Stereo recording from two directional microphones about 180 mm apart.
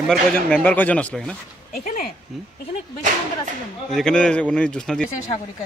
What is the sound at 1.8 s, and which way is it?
Speech, 50° left (ahead or behind).